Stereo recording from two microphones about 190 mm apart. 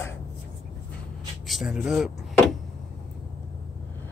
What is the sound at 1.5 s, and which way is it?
Speech, centre (ahead or behind).